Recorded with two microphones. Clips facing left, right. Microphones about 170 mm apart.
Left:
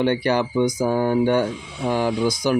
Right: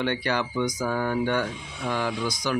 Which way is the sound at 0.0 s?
40° left (ahead or behind).